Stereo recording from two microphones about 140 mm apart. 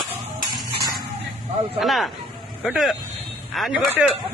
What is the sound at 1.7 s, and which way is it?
A woman's voice, centre (ahead or behind).